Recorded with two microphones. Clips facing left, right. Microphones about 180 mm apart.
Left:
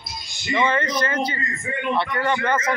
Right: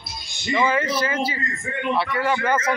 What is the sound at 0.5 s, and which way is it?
A man's voice, 5° right (ahead or behind).